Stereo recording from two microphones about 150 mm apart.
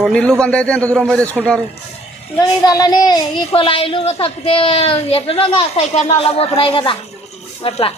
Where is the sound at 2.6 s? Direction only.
25° left (ahead or behind).